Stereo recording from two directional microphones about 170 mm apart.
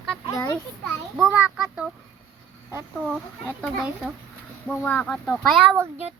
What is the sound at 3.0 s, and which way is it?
Speech, centre (ahead or behind).